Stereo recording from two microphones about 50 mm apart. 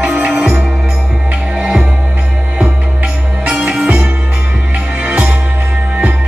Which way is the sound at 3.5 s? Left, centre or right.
Centre.